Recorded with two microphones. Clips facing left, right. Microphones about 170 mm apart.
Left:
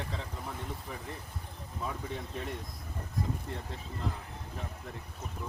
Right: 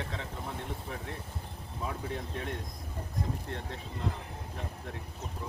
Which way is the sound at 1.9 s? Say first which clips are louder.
Right 2 dB; centre (ahead or behind).